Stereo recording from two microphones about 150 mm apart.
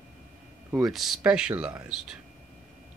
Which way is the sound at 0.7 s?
20° right (ahead or behind).